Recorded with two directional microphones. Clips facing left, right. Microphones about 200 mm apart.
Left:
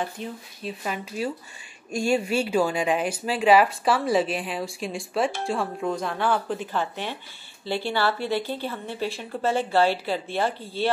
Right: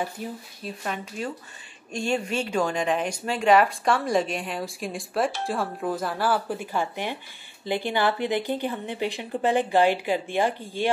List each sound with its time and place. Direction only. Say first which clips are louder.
0.0 s a woman's voice: even; 10° right (ahead or behind)
0.8 s a woman's voice: left 2 dB; 5° left (ahead or behind); by 10.9 s 15° right (ahead or behind)